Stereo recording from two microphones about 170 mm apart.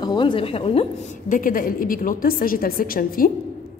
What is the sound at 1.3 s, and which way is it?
A woman's voice, 55° left (ahead or behind).